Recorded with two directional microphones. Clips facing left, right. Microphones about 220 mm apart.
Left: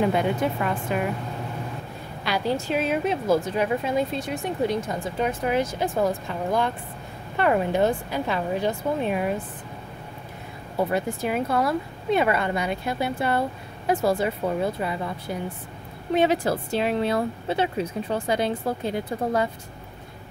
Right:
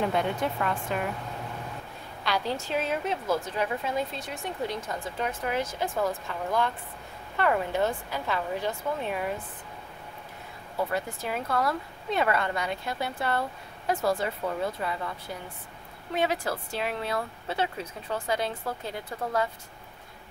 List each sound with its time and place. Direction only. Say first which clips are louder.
0.0 s a woman's voice: left 5 dB; 5° left (ahead or behind)
2.2 s a woman's voice: left 5 dB; 10° left (ahead or behind)
10.8 s a woman's voice: left 6 dB; 15° left (ahead or behind)